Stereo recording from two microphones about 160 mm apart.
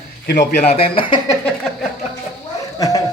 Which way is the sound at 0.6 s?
40° left (ahead or behind).